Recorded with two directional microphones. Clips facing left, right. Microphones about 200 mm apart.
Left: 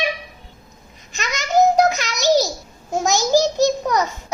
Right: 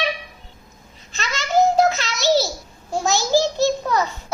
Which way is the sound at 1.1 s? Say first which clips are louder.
Left 1 dB; 15° left (ahead or behind).